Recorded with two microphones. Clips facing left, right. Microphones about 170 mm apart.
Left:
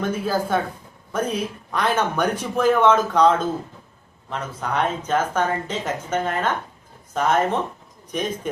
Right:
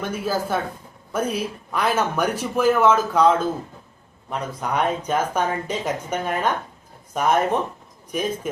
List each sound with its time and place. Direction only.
0.0 s speech: 5° right (ahead or behind)